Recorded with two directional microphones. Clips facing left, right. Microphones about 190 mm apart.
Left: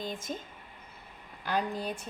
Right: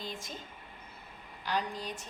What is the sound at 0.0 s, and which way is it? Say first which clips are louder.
Speech: left 6 dB; 50° left (ahead or behind).